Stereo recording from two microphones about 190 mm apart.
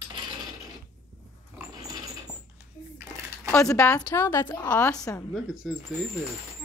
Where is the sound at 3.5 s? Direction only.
15° left (ahead or behind).